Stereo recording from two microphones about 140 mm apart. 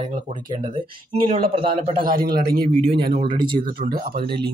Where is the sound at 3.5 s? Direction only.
85° right.